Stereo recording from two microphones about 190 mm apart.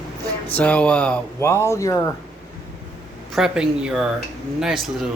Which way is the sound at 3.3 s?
5° right (ahead or behind).